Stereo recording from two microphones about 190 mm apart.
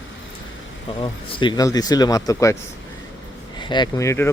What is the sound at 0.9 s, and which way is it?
Speech, 25° left (ahead or behind).